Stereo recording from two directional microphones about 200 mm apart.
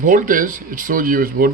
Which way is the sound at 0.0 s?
40° right (ahead or behind).